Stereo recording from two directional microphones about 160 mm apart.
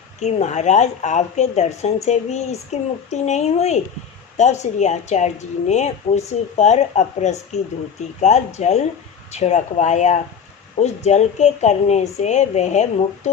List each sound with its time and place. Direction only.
0.2 s a woman's voice: 45° left (ahead or behind)